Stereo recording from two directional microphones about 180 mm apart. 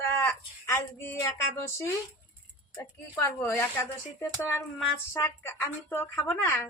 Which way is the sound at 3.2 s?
15° left (ahead or behind).